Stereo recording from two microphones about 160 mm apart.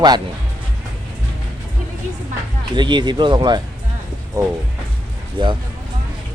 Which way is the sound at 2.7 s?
30° right (ahead or behind).